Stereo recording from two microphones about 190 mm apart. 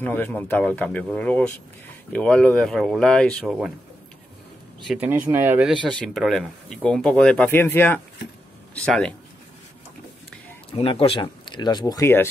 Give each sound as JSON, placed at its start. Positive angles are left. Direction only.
{"t": 0.0, "sound": "speech", "side_deg": 10}
{"t": 4.8, "sound": "speech", "side_deg": -5}
{"t": 5.7, "sound": "speech", "side_deg": 0}
{"t": 10.7, "sound": "speech", "side_deg": 30}